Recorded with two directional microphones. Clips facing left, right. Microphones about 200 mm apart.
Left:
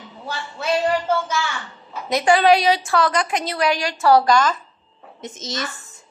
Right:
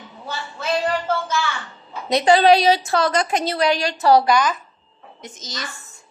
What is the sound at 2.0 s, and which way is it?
A woman's voice, 30° right (ahead or behind).